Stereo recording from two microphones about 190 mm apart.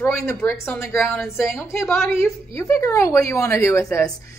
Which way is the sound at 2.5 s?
15° left (ahead or behind).